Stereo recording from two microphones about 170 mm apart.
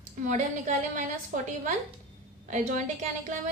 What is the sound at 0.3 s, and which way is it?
A woman's voice, 45° right (ahead or behind).